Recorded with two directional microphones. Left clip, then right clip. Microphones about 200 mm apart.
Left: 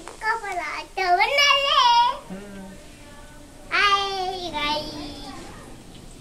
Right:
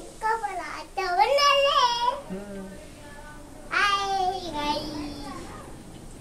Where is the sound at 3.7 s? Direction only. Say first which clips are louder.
Left 3 dB; 15° right (ahead or behind).